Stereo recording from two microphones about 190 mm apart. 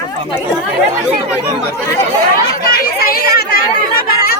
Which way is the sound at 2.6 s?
50° left (ahead or behind).